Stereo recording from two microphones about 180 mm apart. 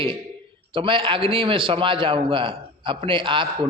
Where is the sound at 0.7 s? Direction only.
30° right (ahead or behind).